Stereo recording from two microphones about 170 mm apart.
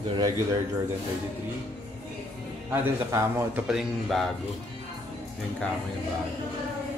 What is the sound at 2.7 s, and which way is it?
Speech, 15° right (ahead or behind).